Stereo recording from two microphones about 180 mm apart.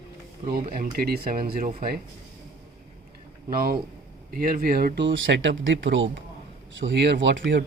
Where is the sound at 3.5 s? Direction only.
55° right (ahead or behind); by 7.6 s 75° right (ahead or behind).